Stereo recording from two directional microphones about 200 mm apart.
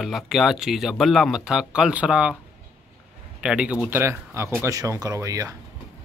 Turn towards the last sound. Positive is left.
turn(degrees=-15)  # may be behind; listen again after turning